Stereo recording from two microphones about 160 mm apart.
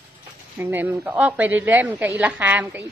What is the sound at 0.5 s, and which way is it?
A woman's voice, 10° right (ahead or behind).